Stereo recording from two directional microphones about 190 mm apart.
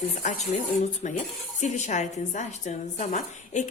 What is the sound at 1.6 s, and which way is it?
A woman's voice, 40° left (ahead or behind).